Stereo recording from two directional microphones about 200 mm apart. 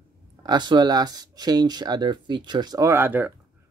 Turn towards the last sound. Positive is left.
turn(degrees=-10)  # may be behind; listen again after turning